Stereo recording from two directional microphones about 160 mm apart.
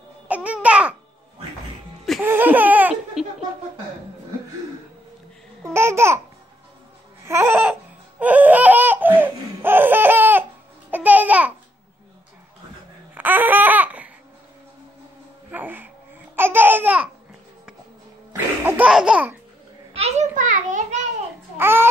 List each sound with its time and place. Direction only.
0.3 s babbling: 10° right (ahead or behind)
2.2 s laughter: 10° right (ahead or behind)
5.6 s babbling: 15° right (ahead or behind)
7.2 s babbling: 15° right (ahead or behind)
8.2 s laughter: 10° right (ahead or behind)
10.9 s babbling: 10° right (ahead or behind)
13.1 s babbling: 10° right (ahead or behind)
15.5 s a sound: 10° right (ahead or behind)
16.3 s babbling: 15° right (ahead or behind)
18.3 s laughter: 15° right (ahead or behind)
19.9 s a sound: 40° right (ahead or behind)
21.5 s babbling: 15° right (ahead or behind)